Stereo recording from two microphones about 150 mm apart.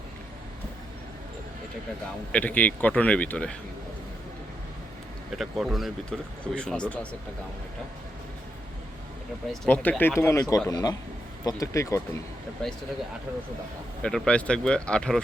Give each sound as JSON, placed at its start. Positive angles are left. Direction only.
{"t": 2.3, "sound": "speech", "side_deg": 10}
{"t": 5.4, "sound": "speech", "side_deg": 0}
{"t": 9.5, "sound": "speech", "side_deg": 10}
{"t": 14.0, "sound": "speech", "side_deg": 5}